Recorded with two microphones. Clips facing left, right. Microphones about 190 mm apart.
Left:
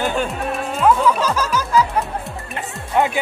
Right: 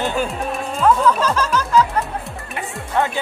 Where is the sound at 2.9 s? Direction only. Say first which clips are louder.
Left 2 dB; 15° left (ahead or behind).